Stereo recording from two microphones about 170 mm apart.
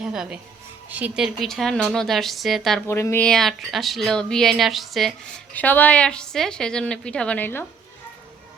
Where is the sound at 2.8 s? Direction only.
15° left (ahead or behind).